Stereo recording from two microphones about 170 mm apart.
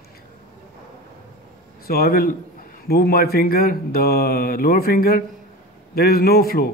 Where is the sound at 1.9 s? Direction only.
65° left (ahead or behind).